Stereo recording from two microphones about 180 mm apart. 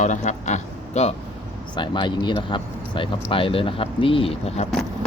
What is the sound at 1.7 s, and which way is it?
Speech, 25° left (ahead or behind).